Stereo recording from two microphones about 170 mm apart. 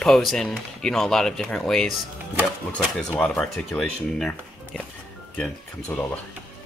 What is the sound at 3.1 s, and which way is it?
Speech, 5° left (ahead or behind).